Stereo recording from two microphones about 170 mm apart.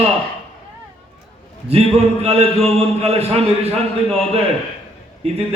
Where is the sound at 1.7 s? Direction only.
35° right (ahead or behind).